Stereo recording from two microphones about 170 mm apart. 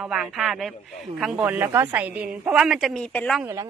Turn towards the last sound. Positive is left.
turn(degrees=-15)  # may be behind; listen again after turning